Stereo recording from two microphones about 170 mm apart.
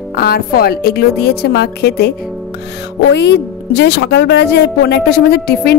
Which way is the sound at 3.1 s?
90° left.